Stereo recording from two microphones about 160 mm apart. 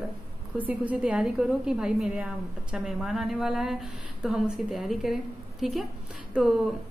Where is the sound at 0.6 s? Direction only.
10° right (ahead or behind).